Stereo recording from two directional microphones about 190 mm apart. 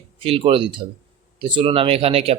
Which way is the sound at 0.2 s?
30° right (ahead or behind).